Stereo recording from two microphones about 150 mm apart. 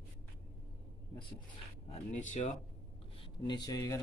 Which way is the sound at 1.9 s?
55° left (ahead or behind).